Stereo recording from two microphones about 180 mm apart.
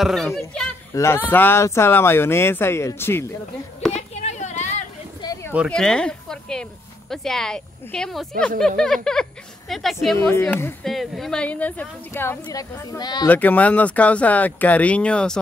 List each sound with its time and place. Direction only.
0.0 s speech: centre (ahead or behind)
0.9 s speech: 15° left (ahead or behind)
3.9 s a sound: 40° left (ahead or behind)
5.2 s a sound: 20° left (ahead or behind)
5.7 s speech: 5° left (ahead or behind)
10.1 s speech: 15° left (ahead or behind)
13.3 s speech: 10° left (ahead or behind)